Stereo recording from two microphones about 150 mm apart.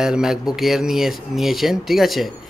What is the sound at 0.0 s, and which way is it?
Speech, 5° right (ahead or behind).